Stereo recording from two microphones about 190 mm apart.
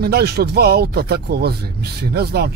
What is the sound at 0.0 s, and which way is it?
Speech, 55° right (ahead or behind).